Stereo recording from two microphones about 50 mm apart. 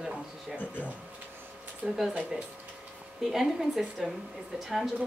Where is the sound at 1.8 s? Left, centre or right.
Right.